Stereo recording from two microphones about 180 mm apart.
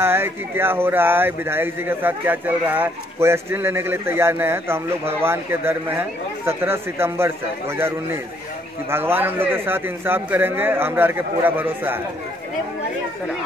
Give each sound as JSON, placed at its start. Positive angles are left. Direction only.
{"t": 0.0, "sound": "speech", "side_deg": -15}